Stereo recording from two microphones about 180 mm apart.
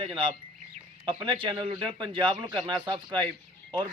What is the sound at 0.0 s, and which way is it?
Speech, 30° right (ahead or behind).